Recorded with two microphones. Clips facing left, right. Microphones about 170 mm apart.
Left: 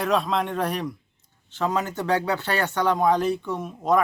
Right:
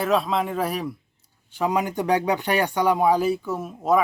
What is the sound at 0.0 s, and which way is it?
Speech, centre (ahead or behind).